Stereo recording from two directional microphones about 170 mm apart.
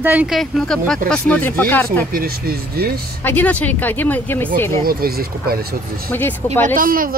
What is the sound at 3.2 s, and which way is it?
Speech, 10° left (ahead or behind).